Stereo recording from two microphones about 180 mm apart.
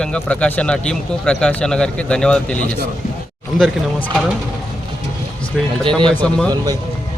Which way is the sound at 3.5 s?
45° left (ahead or behind).